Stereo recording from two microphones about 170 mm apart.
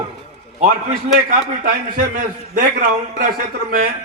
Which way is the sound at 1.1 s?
50° right (ahead or behind).